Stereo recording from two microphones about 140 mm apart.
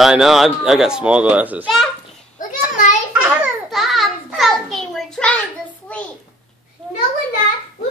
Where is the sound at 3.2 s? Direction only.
5° right (ahead or behind).